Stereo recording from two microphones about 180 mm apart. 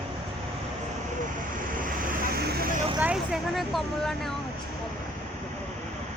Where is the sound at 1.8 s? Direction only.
50° right (ahead or behind).